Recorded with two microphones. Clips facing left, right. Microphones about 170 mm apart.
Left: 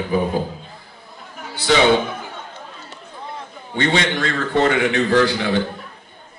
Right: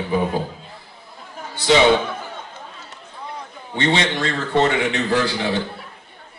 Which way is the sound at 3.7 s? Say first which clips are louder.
Left 1 dB; 25° right (ahead or behind).